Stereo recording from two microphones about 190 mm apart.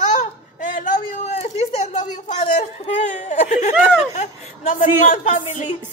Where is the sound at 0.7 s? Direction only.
40° left (ahead or behind).